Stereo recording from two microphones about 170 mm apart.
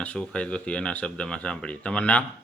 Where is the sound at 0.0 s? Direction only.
5° left (ahead or behind).